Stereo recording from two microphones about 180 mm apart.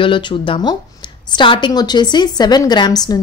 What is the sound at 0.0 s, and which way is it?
Speech, 25° left (ahead or behind).